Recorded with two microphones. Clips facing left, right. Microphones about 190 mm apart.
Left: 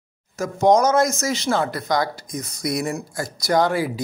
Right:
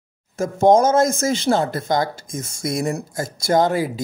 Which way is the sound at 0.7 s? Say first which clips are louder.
Right 2 dB; 25° right (ahead or behind).